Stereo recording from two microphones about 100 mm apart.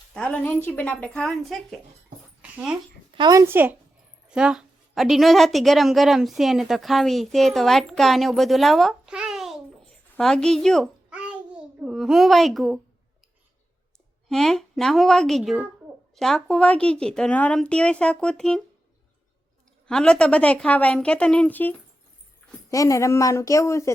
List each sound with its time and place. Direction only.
0.1 s a woman's voice: 10° left (ahead or behind)
2.4 s dog: 10° right (ahead or behind)
3.2 s speech: 40° right (ahead or behind)
3.4 s speech: 20° right (ahead or behind)
4.3 s a woman's voice: 10° right (ahead or behind)
11.1 s babbling: 10° right (ahead or behind)
14.3 s a woman's voice: centre (ahead or behind)
19.9 s a woman's voice: 10° left (ahead or behind)
22.7 s speech: 35° left (ahead or behind)